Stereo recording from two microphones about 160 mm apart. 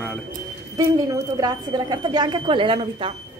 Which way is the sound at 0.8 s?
20° right (ahead or behind).